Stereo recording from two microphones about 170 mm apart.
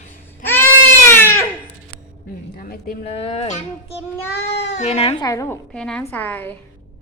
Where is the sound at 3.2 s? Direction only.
40° left (ahead or behind).